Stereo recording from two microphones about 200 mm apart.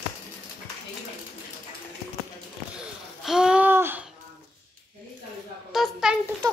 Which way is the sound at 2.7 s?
5° right (ahead or behind).